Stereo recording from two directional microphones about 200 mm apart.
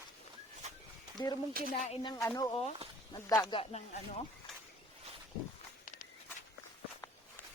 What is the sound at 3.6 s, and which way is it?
Speech, 30° left (ahead or behind).